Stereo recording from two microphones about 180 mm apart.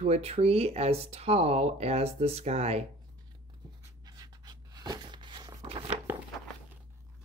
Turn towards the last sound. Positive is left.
turn(degrees=-30)  # may be behind; listen again after turning